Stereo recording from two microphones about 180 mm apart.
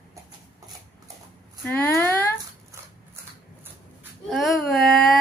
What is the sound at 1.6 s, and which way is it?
Speech, 10° left (ahead or behind).